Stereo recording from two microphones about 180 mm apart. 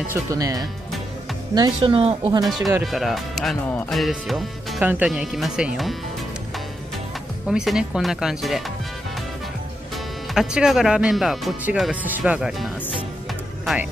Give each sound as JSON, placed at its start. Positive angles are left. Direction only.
{"t": 0.1, "sound": "a woman's voice", "side_deg": -20}
{"t": 2.4, "sound": "speech", "side_deg": 0}
{"t": 7.4, "sound": "speech", "side_deg": -5}
{"t": 10.3, "sound": "speech", "side_deg": -5}